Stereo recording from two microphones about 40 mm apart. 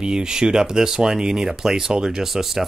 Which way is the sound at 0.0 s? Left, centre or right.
Centre.